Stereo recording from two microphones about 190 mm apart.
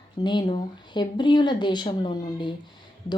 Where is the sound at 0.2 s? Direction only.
25° left (ahead or behind).